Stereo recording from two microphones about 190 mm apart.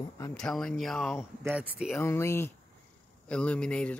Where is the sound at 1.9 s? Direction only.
15° left (ahead or behind).